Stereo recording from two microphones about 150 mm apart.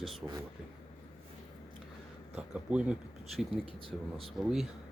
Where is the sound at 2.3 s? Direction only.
5° right (ahead or behind).